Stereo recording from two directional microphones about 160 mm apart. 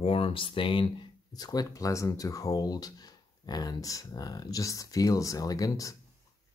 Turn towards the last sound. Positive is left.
turn(degrees=20)  # may be behind; listen again after turning